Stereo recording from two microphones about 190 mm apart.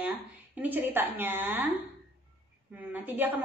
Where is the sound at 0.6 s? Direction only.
10° right (ahead or behind).